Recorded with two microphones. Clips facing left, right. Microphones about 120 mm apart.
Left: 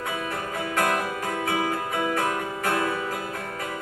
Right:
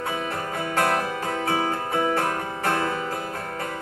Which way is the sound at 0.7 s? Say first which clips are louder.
Right 2 dB; 30° right (ahead or behind).